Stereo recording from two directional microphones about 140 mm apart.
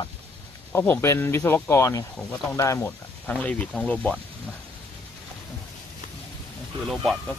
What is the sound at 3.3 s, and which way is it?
Speech, 10° left (ahead or behind).